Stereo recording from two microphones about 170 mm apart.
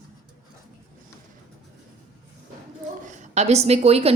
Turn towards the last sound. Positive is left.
turn(degrees=-35)  # may be behind; listen again after turning